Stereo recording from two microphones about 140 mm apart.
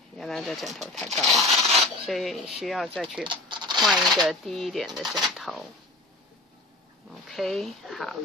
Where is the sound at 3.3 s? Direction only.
35° right (ahead or behind).